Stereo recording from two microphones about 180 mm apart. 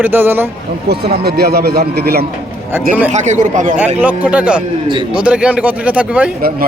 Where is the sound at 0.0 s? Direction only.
10° right (ahead or behind).